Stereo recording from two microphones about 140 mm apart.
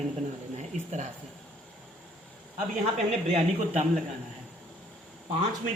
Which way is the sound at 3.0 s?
55° right (ahead or behind).